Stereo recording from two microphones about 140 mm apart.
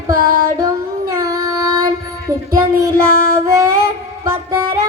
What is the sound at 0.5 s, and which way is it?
Child singing, 25° right (ahead or behind).